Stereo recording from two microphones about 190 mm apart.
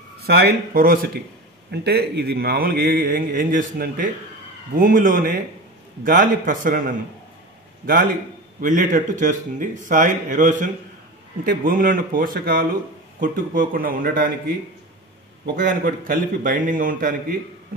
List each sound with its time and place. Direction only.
0.2 s a man's voice: 60° right (ahead or behind)
7.8 s a man's voice: 50° right (ahead or behind)
15.4 s a man's voice: 45° right (ahead or behind)